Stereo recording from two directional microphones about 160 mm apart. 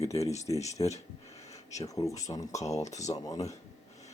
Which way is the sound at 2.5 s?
45° left (ahead or behind).